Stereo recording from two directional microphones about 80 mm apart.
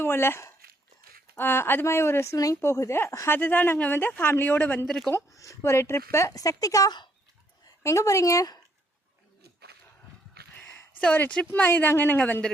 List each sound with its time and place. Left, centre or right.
0.0 s speech: left
4.9 s speech: centre
5.3 s speech: left
11.1 s speech: left